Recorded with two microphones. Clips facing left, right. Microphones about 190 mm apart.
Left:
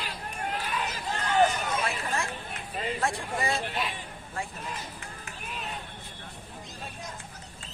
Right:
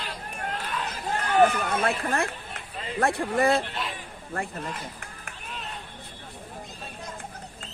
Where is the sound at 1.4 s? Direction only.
60° right (ahead or behind).